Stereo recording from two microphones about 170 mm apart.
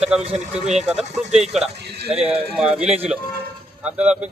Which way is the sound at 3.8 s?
10° right (ahead or behind).